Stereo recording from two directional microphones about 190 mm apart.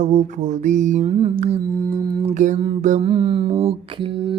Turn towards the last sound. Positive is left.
turn(degrees=-25)  # may be behind; listen again after turning